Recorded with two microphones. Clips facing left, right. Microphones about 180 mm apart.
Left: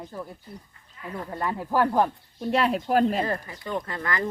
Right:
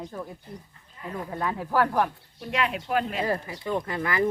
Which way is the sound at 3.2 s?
10° right (ahead or behind).